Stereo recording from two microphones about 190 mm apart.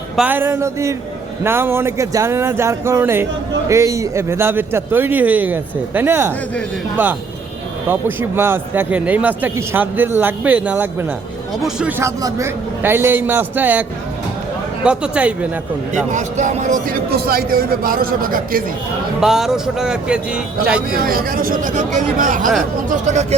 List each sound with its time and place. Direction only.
0.2 s a man's voice: 10° right (ahead or behind)
14.8 s a man's voice: 5° right (ahead or behind)
16.1 s a man's voice: 40° right (ahead or behind)
19.2 s speech: centre (ahead or behind)
20.9 s a man's voice: 50° right (ahead or behind)